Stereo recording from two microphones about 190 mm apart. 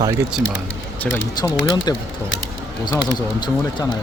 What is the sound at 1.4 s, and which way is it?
Speech, 20° left (ahead or behind).